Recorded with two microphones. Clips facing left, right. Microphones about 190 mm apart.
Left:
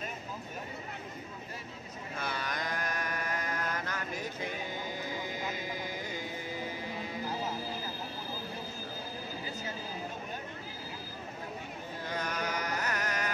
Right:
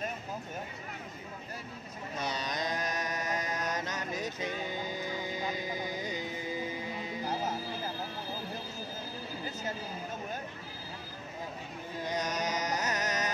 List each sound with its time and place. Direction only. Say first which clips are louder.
2.1 s mantra: right 2 dB; 20° right (ahead or behind)
12.0 s mantra: right 3 dB; 15° right (ahead or behind)